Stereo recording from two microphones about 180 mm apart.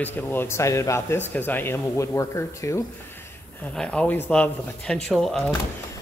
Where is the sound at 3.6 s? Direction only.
5° left (ahead or behind).